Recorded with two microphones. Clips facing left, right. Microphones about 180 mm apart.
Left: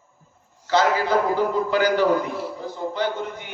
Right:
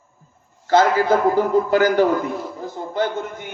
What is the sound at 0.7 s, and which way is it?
A man's voice, 45° right (ahead or behind).